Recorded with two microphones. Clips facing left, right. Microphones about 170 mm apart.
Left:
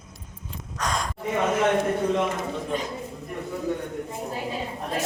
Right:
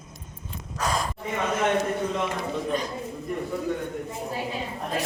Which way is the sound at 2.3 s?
20° left (ahead or behind).